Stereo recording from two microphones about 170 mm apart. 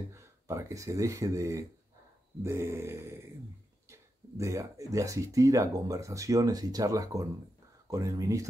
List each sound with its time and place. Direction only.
0.1 s speech: 15° right (ahead or behind)
2.4 s a sound: 15° right (ahead or behind)
3.9 s speech: 15° right (ahead or behind)